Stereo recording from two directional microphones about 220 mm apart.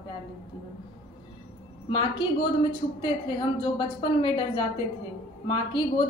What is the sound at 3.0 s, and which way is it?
A woman's voice, 20° left (ahead or behind).